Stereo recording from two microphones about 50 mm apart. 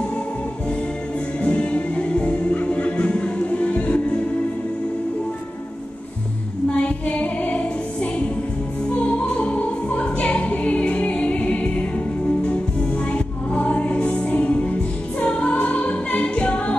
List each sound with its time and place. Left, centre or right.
1.4 s music: left
6.7 s music: left
13.0 s music: left